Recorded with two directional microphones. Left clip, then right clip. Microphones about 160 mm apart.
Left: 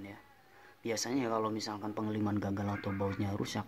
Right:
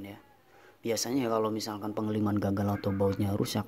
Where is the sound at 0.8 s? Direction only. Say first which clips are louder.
Right 4 dB; 20° right (ahead or behind).